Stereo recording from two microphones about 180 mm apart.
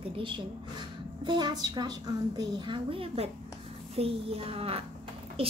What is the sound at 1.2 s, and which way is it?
A woman's voice, 25° right (ahead or behind).